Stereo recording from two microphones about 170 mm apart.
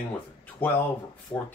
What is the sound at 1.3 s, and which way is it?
Speech, 20° left (ahead or behind).